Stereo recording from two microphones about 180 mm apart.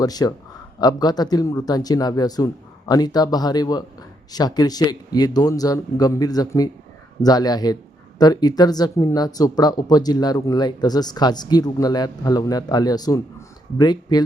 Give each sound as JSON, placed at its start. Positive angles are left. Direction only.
{"t": 0.0, "sound": "speech", "side_deg": 20}